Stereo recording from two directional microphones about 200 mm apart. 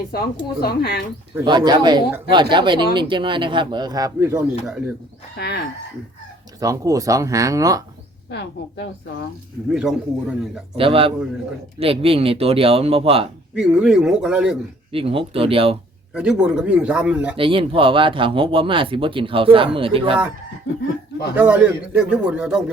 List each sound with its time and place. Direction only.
0.1 s speech: 50° left (ahead or behind)
1.5 s a man's voice: 20° right (ahead or behind); by 4.9 s 5° right (ahead or behind)
5.4 s a woman's voice: 55° left (ahead or behind)
6.6 s speech: 15° right (ahead or behind)
8.3 s a woman's voice: 60° left (ahead or behind)
9.7 s a man's voice: 5° right (ahead or behind)
10.8 s speech: 30° right (ahead or behind)
13.6 s a man's voice: 5° right (ahead or behind)
14.9 s speech: 30° right (ahead or behind)
16.1 s a man's voice: 5° right (ahead or behind)
17.3 s speech: 25° right (ahead or behind)
21.3 s a man's voice: 10° right (ahead or behind)